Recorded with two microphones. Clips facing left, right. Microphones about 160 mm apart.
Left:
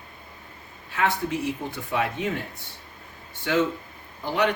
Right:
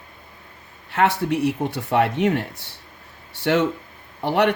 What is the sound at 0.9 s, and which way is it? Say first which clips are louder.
Speech: right 5 dB; 70° right (ahead or behind).